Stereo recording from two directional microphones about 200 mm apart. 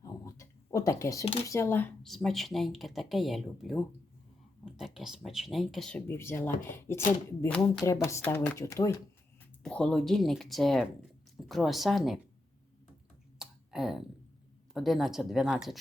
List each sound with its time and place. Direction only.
0.0 s a sound: 15° left (ahead or behind)
1.5 s speech: 15° left (ahead or behind)
4.9 s speech: centre (ahead or behind); by 9.0 s 15° left (ahead or behind)
9.6 s speech: 5° left (ahead or behind)
13.4 s clicking: centre (ahead or behind)
14.7 s speech: centre (ahead or behind)